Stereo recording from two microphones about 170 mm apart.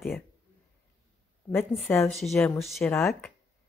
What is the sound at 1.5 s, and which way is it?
Speech, 15° left (ahead or behind).